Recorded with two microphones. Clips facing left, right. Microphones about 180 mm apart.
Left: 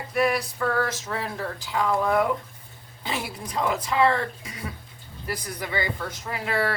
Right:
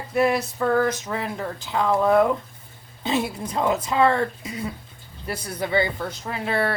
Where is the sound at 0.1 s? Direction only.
25° right (ahead or behind).